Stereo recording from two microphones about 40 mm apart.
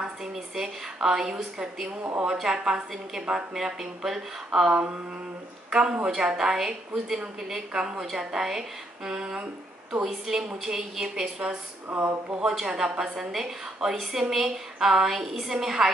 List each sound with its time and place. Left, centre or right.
0.0 s a woman's voice: centre
2.4 s a woman's voice: centre